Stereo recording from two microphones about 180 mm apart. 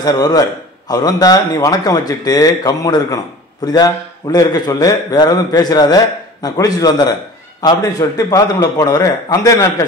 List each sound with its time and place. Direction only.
0.0 s a man's voice: 20° left (ahead or behind)